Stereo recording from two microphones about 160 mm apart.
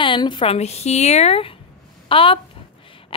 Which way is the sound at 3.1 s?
35° left (ahead or behind).